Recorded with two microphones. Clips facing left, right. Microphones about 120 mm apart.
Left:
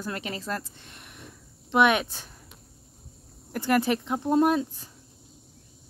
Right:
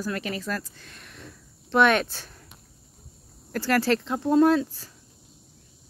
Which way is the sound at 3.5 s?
20° left (ahead or behind).